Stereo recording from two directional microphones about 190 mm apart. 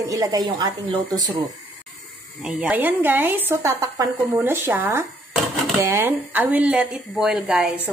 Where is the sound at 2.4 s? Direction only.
5° right (ahead or behind).